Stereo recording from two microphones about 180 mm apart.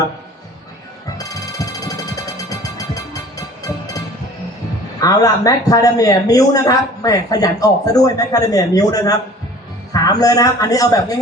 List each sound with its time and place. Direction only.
1.2 s music: 20° left (ahead or behind)
4.9 s speech: 20° left (ahead or behind)